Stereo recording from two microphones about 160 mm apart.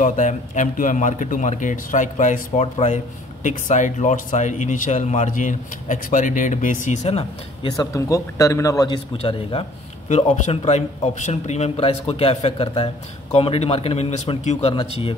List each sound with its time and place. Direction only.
0.0 s speech: 50° left (ahead or behind)
7.7 s a man's voice: 20° left (ahead or behind)
10.0 s speech: 50° left (ahead or behind)
14.7 s speech: 35° left (ahead or behind)